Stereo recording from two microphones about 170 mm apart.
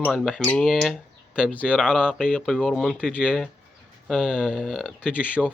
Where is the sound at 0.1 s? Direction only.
Centre (ahead or behind).